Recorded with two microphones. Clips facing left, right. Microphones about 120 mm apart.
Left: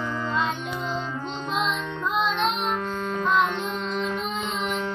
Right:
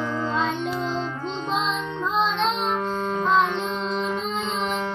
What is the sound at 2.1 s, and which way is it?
Music, 30° right (ahead or behind).